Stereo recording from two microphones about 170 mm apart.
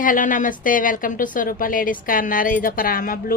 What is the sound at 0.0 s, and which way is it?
A woman's voice, 50° left (ahead or behind).